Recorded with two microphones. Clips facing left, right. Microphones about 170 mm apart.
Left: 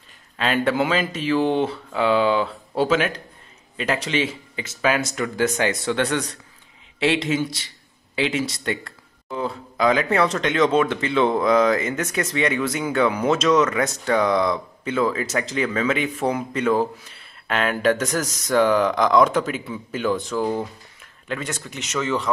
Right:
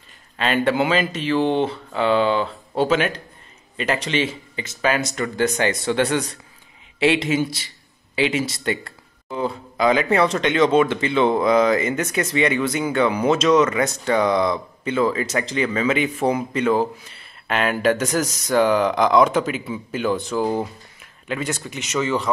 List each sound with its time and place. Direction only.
0.4 s speech: centre (ahead or behind)